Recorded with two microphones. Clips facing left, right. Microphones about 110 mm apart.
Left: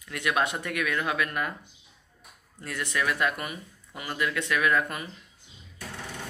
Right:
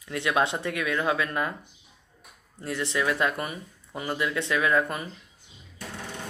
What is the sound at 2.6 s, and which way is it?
Speech, 25° right (ahead or behind).